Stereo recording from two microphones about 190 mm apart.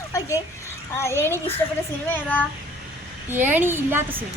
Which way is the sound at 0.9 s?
15° left (ahead or behind).